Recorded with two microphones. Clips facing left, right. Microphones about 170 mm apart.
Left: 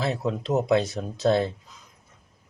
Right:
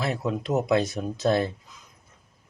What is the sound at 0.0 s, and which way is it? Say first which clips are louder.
Speech: left 1 dB; 25° left (ahead or behind).